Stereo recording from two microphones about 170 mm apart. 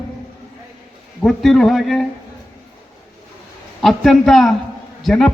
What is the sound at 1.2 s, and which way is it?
Speech, centre (ahead or behind).